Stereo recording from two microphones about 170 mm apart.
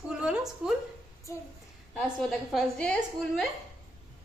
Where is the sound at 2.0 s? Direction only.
Centre (ahead or behind).